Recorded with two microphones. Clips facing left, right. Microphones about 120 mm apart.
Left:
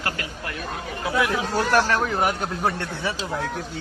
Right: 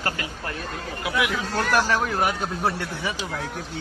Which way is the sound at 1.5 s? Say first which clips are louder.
Left 1 dB; centre (ahead or behind).